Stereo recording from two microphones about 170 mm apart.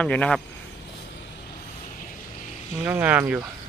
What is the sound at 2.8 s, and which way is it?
Speech, 10° right (ahead or behind).